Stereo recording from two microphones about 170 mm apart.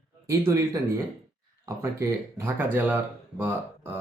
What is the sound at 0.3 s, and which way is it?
Speech, 15° right (ahead or behind).